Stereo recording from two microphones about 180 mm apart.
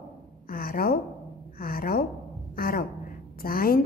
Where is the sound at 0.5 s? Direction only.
55° left (ahead or behind).